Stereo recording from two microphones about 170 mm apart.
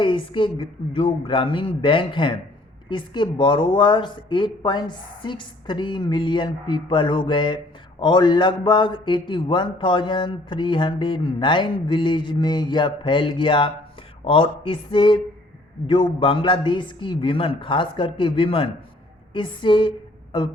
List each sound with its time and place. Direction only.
0.0 s a woman's voice: 30° left (ahead or behind)